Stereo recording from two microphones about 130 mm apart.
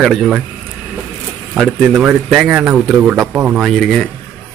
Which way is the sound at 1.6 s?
5° right (ahead or behind).